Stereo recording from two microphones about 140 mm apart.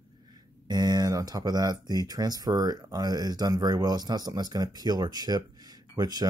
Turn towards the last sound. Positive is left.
turn(degrees=-30)  # may be behind; listen again after turning